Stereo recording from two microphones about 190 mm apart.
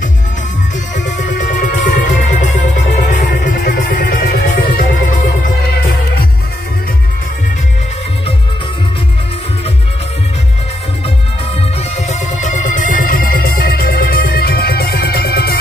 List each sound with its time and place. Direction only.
0.9 s music: 40° left (ahead or behind)
3.3 s music: 50° left (ahead or behind)
12.1 s music: 40° left (ahead or behind)